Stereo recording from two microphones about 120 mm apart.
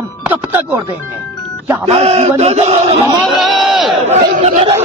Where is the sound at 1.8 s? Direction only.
60° right (ahead or behind).